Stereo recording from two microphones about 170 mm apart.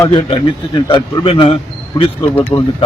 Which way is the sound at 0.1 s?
30° left (ahead or behind).